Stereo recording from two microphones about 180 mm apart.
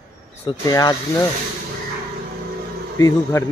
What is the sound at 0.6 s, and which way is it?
Speech, 20° left (ahead or behind).